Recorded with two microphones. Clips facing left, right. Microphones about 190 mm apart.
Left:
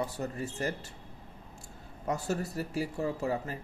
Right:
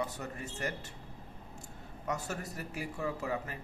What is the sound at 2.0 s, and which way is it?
Speech, 30° left (ahead or behind).